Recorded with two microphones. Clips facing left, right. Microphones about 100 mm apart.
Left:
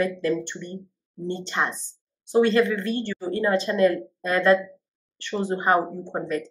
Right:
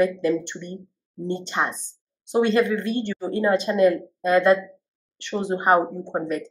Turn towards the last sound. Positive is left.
turn(degrees=-15)  # may be behind; listen again after turning